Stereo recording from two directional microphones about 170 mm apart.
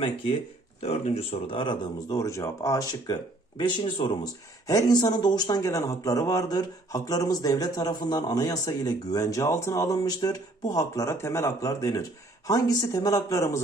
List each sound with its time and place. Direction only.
0.8 s speech: 40° left (ahead or behind); by 13.6 s 20° left (ahead or behind)